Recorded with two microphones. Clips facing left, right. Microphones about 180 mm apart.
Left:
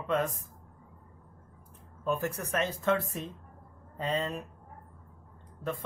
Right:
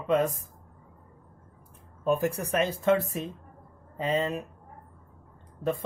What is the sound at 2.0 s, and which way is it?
Speech, 15° right (ahead or behind).